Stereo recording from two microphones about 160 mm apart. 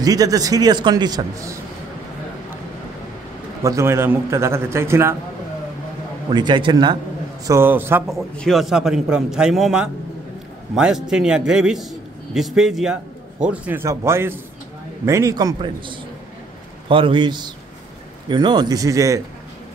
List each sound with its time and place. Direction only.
0.0 s a man's voice: 25° right (ahead or behind)
3.6 s a man's voice: 15° right (ahead or behind)
6.3 s a man's voice: 30° right (ahead or behind)
7.4 s a man's voice: 15° right (ahead or behind)
8.1 s a man's voice: centre (ahead or behind); by 19.2 s 20° right (ahead or behind)